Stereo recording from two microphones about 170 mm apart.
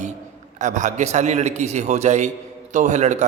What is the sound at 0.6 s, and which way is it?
A man's voice, 45° right (ahead or behind).